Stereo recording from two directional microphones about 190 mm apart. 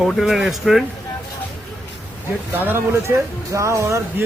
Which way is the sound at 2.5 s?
10° right (ahead or behind).